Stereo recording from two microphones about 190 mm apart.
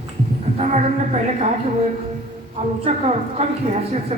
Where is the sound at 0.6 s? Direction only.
35° right (ahead or behind).